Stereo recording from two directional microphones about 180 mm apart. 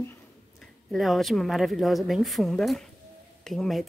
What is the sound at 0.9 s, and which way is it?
A woman's voice, centre (ahead or behind).